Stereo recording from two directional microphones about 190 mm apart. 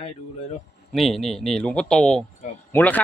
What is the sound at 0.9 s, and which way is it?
Speech, centre (ahead or behind).